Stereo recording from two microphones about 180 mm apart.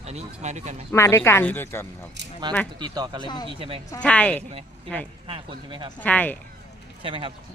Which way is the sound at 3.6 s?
30° right (ahead or behind).